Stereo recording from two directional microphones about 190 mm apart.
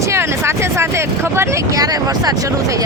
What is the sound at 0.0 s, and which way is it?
Speech, 15° right (ahead or behind).